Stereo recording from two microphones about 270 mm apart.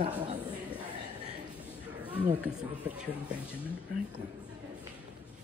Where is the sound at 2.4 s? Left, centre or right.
Centre.